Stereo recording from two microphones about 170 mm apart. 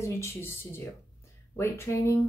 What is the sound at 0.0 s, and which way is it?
Speech, 15° left (ahead or behind).